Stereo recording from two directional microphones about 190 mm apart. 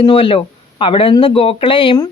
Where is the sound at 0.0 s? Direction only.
25° left (ahead or behind).